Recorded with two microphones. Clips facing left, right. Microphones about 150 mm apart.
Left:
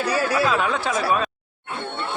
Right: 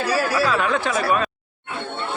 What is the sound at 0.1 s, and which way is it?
Speech, 20° left (ahead or behind).